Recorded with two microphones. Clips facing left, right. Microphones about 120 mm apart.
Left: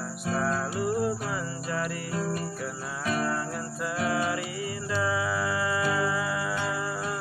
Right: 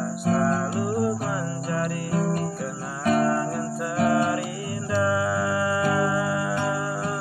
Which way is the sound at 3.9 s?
45° right (ahead or behind).